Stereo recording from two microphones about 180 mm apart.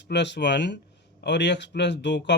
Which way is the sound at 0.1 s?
75° left (ahead or behind).